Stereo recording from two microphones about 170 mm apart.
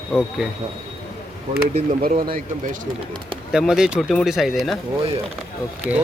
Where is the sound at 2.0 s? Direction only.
60° right (ahead or behind).